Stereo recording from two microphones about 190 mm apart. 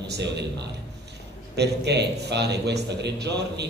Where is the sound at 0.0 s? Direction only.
65° right (ahead or behind).